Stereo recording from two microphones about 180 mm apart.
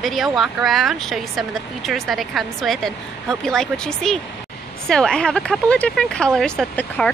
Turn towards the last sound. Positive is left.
turn(degrees=5)  # may be behind; listen again after turning